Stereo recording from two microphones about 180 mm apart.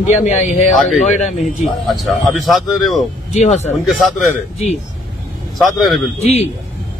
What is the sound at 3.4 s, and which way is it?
Speech, 40° left (ahead or behind).